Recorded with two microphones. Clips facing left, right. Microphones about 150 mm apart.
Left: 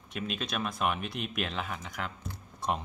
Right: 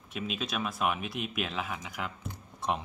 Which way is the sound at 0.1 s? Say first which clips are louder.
Even; centre (ahead or behind).